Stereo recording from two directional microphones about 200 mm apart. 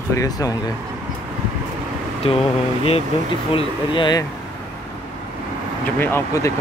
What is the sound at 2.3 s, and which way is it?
Speech, 30° left (ahead or behind).